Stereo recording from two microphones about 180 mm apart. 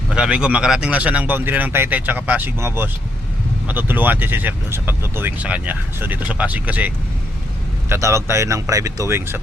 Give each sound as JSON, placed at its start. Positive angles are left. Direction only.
{"t": 0.1, "sound": "speech", "side_deg": -5}